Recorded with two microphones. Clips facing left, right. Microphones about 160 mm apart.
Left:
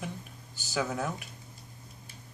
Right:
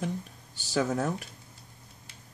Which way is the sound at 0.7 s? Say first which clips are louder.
Right 4 dB; 35° right (ahead or behind).